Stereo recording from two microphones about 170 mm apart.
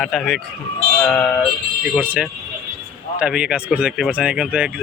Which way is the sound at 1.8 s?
10° right (ahead or behind).